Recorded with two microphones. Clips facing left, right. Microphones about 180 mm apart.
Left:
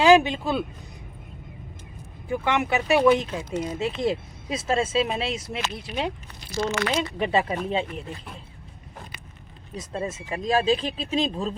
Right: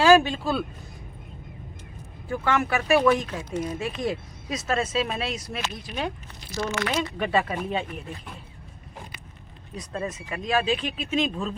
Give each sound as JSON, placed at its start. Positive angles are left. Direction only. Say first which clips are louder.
{"t": 0.0, "sound": "speech", "louder": "left 1 dB", "side_deg": 15}
{"t": 2.2, "sound": "speech", "louder": "even", "side_deg": 20}
{"t": 9.7, "sound": "speech", "louder": "left 1 dB", "side_deg": 25}